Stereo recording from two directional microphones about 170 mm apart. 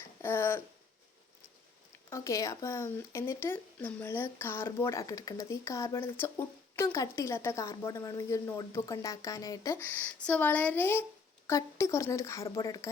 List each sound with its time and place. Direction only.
0.2 s speech: 15° left (ahead or behind)
2.0 s speech: 20° left (ahead or behind)